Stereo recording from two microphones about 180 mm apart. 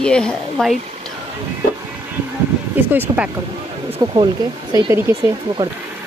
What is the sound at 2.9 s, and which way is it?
Speech, 10° right (ahead or behind).